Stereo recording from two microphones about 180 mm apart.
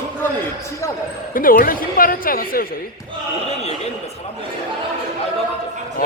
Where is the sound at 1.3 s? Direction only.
50° left (ahead or behind).